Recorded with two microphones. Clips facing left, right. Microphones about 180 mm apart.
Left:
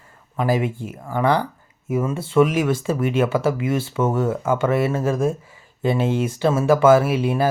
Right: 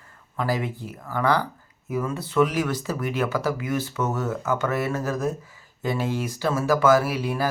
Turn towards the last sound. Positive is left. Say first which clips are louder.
# left 6 dB
turn(degrees=25)  # may be behind; listen again after turning